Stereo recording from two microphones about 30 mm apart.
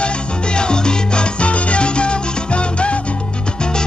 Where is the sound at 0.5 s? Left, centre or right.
Left.